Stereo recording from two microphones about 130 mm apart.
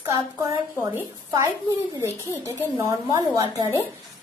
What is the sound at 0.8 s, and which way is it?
A woman's voice, 25° right (ahead or behind).